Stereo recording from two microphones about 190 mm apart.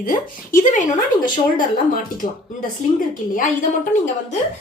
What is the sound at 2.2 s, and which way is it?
A woman's voice, 45° left (ahead or behind).